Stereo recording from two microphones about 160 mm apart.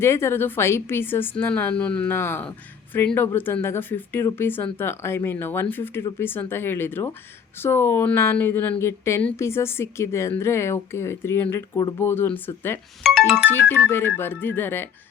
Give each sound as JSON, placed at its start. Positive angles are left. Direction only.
{"t": 0.0, "sound": "a woman's voice", "side_deg": 15}
{"t": 13.0, "sound": "speech", "side_deg": 0}
{"t": 13.5, "sound": "a woman's voice", "side_deg": 15}